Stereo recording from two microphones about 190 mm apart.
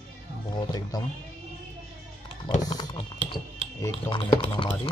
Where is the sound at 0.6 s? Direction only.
20° left (ahead or behind).